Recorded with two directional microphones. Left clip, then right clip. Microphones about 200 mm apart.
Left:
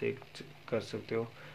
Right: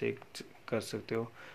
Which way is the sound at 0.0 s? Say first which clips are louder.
Even; 25° right (ahead or behind).